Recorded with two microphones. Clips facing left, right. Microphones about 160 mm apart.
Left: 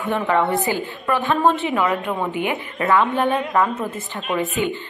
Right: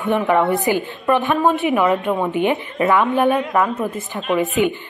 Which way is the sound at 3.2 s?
5° right (ahead or behind).